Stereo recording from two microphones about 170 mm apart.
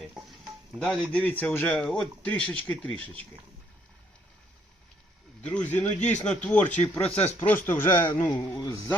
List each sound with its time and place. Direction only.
0.7 s a man's voice: 5° left (ahead or behind)
5.4 s a man's voice: 10° left (ahead or behind)
7.1 s speech: 40° left (ahead or behind)
7.3 s a man's voice: 10° left (ahead or behind)
8.0 s speech: 30° left (ahead or behind)
8.5 s a man's voice: 20° left (ahead or behind)